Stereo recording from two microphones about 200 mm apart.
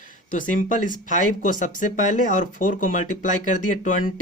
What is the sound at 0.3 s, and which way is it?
Speech, 40° left (ahead or behind).